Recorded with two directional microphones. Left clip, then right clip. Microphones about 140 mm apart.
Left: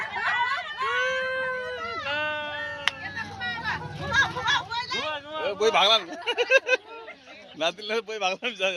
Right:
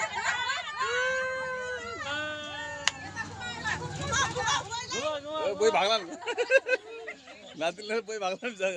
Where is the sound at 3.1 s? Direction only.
Centre (ahead or behind).